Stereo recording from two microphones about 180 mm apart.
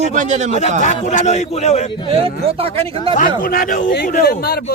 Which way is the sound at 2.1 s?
30° right (ahead or behind).